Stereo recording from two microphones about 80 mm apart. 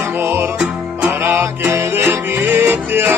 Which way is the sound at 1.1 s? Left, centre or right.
Right.